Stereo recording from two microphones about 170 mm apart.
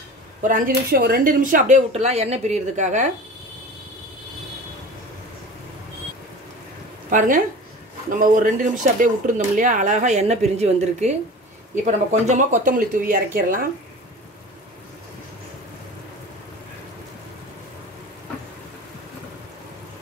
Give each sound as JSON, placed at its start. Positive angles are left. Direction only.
{"t": 0.4, "sound": "speech", "side_deg": -50}
{"t": 7.1, "sound": "a woman's voice", "side_deg": -50}